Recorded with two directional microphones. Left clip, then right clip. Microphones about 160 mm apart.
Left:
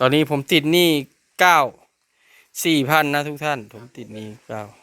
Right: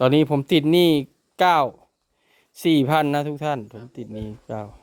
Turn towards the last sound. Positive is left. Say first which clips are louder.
# left 1 dB
turn(degrees=-15)  # may be behind; listen again after turning